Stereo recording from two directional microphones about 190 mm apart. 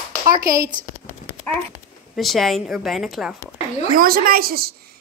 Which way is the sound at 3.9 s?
50° right (ahead or behind).